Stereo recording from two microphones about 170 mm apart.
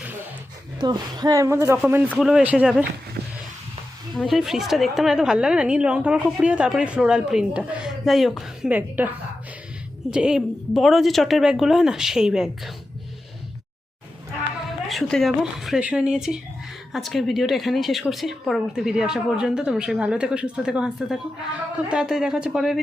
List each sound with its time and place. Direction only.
0.8 s speech: 25° right (ahead or behind); by 2.8 s 5° right (ahead or behind)
3.2 s vehicle: 65° right (ahead or behind)
4.1 s a woman's voice: centre (ahead or behind)
14.8 s a woman's voice: centre (ahead or behind)